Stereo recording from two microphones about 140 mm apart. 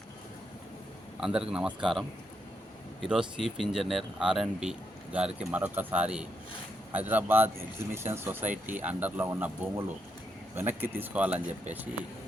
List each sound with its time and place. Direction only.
1.2 s speech: 5° right (ahead or behind)